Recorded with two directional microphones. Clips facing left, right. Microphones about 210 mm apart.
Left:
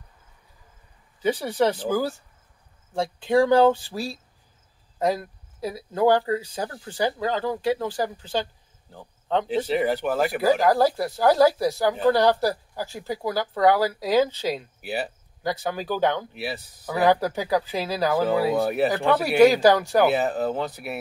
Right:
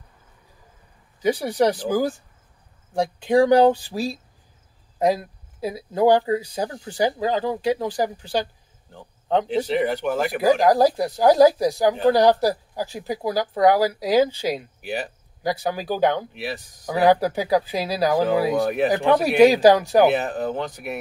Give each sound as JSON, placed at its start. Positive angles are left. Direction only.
{"t": 1.2, "sound": "speech", "side_deg": -15}
{"t": 9.7, "sound": "speech", "side_deg": 5}
{"t": 10.4, "sound": "speech", "side_deg": -15}
{"t": 14.8, "sound": "speech", "side_deg": 5}
{"t": 15.4, "sound": "speech", "side_deg": -15}
{"t": 18.6, "sound": "speech", "side_deg": 5}
{"t": 18.9, "sound": "speech", "side_deg": -20}
{"t": 20.1, "sound": "speech", "side_deg": 5}